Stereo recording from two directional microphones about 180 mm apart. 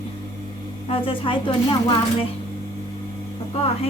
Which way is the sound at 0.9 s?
30° left (ahead or behind).